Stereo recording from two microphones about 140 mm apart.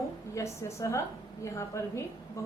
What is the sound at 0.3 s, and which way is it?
A woman's voice, 20° left (ahead or behind).